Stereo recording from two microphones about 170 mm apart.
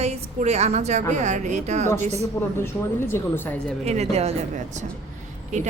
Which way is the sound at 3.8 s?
40° right (ahead or behind).